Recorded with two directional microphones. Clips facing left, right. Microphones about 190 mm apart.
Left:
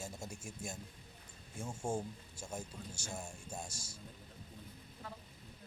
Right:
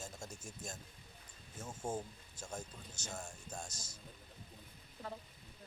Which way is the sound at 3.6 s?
25° left (ahead or behind).